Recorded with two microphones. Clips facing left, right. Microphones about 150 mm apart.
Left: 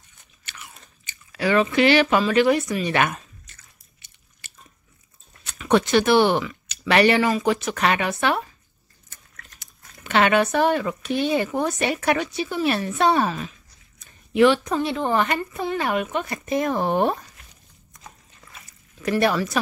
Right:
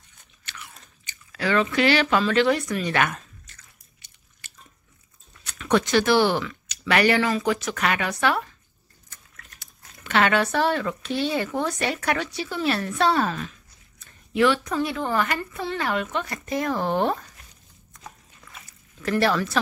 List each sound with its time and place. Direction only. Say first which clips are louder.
1.3 s speech: left 3 dB; 15° left (ahead or behind)
2.8 s drip: left 2 dB; 20° left (ahead or behind)
5.7 s a woman's voice: left 2 dB; 20° left (ahead or behind)
9.6 s speech: left 2 dB; 20° left (ahead or behind)
13.2 s speech: left 2 dB; 5° left (ahead or behind)
13.9 s a woman's voice: left 4 dB; 20° left (ahead or behind)
19.0 s speech: left 1 dB; 15° left (ahead or behind)